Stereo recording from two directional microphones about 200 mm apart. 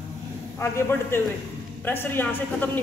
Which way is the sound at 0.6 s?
10° left (ahead or behind).